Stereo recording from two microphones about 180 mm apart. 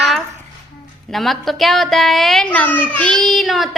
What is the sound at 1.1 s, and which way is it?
A woman's voice, centre (ahead or behind).